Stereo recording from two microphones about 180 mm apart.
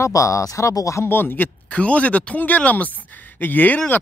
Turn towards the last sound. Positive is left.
turn(degrees=10)  # may be behind; listen again after turning